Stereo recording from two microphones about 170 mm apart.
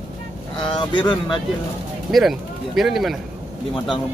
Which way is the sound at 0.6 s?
30° left (ahead or behind).